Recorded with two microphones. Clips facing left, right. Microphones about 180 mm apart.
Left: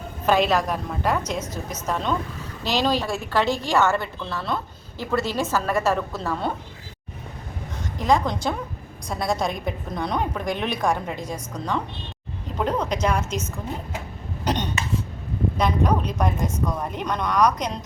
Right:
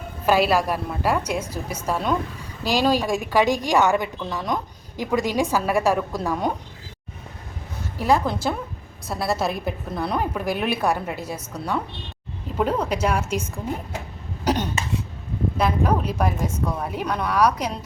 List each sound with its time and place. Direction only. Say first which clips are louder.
0.3 s a woman's voice: right 1 dB; 5° right (ahead or behind)
7.9 s a woman's voice: right 1 dB; 5° right (ahead or behind)
14.4 s cough: right 3 dB; 10° right (ahead or behind)
15.5 s a woman's voice: right 1 dB; 5° right (ahead or behind)